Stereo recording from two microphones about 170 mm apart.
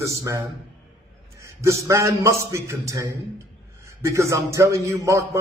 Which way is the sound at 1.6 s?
15° right (ahead or behind).